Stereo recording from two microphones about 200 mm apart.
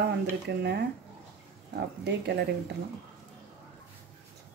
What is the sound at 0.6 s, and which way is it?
A woman's voice, 55° right (ahead or behind).